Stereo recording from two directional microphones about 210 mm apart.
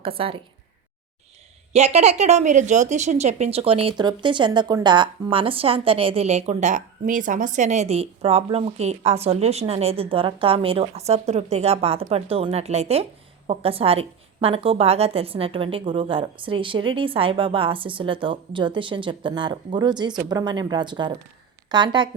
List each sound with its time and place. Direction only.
0.0 s speech: 25° right (ahead or behind)
1.7 s speech: 30° right (ahead or behind)